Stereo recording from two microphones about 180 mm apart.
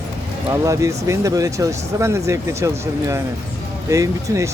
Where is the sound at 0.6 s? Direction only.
15° right (ahead or behind).